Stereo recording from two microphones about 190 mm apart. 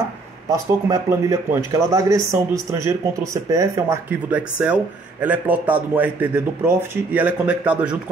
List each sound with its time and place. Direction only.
0.5 s a man's voice: 20° right (ahead or behind)